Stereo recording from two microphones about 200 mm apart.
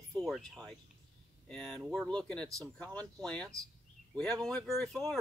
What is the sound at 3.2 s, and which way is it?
Speech, 5° left (ahead or behind).